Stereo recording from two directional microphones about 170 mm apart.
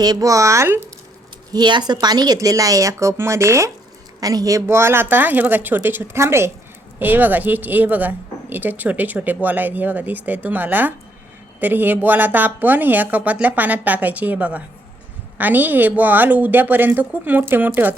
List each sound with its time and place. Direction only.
0.0 s a woman's voice: 20° right (ahead or behind)